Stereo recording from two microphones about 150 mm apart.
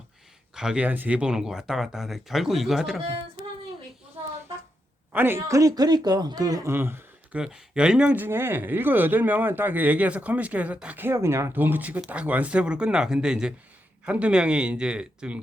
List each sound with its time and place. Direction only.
0.5 s speech: 5° right (ahead or behind)
5.1 s speech: 15° right (ahead or behind)
7.4 s speech: 5° right (ahead or behind)